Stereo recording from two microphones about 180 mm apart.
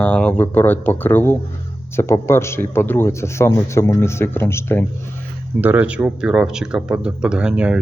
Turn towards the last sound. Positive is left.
turn(degrees=-5)  # may be behind; listen again after turning